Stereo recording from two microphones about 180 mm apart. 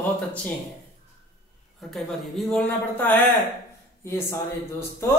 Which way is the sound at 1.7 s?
Centre (ahead or behind).